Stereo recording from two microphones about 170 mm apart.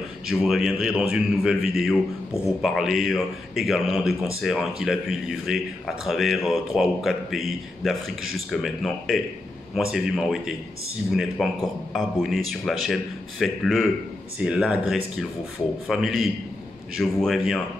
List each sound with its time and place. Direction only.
0.3 s speech: centre (ahead or behind)